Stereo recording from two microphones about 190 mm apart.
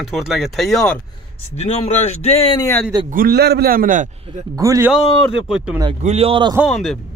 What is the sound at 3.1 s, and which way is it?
A man's voice, 50° right (ahead or behind).